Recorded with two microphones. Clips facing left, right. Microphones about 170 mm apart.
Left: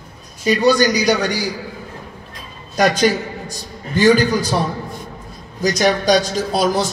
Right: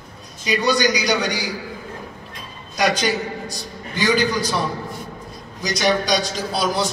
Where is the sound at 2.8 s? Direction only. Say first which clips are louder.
Left 5 dB; 45° left (ahead or behind).